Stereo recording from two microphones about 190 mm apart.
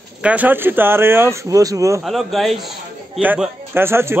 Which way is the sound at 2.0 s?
Centre (ahead or behind).